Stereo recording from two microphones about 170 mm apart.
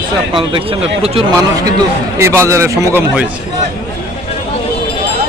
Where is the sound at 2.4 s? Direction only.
15° right (ahead or behind).